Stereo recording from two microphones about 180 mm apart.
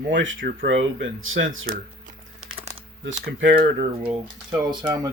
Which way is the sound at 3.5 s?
50° right (ahead or behind).